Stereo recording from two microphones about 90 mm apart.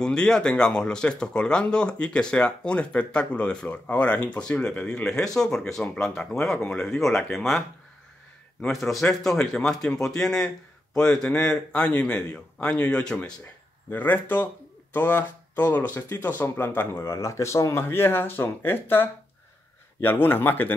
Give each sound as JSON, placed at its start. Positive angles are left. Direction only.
{"t": 0.0, "sound": "speech", "side_deg": 10}